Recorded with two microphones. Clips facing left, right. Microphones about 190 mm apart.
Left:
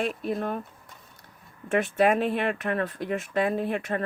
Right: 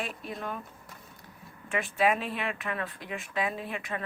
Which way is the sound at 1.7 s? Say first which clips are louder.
Left 5 dB; 45° left (ahead or behind).